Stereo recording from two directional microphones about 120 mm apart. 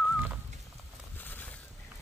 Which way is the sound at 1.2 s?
15° left (ahead or behind).